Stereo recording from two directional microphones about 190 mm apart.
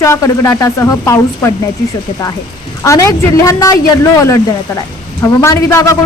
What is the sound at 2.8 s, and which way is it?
A woman's voice, 15° left (ahead or behind).